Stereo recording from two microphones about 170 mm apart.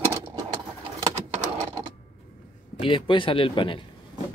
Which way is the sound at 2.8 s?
30° left (ahead or behind).